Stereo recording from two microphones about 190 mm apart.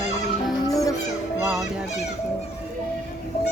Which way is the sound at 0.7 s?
15° left (ahead or behind).